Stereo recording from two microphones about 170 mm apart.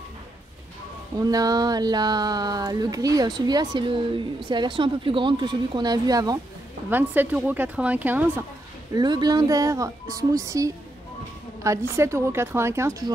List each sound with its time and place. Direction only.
1.1 s speech: 20° right (ahead or behind)
6.9 s speech: 10° right (ahead or behind)
8.9 s speech: 25° right (ahead or behind)